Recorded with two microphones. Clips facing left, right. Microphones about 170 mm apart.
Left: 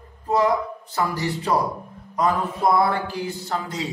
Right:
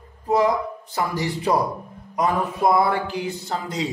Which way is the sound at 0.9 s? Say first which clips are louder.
Even; 15° right (ahead or behind).